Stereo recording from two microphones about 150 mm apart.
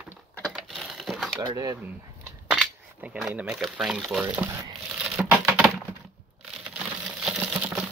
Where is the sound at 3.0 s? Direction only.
10° right (ahead or behind).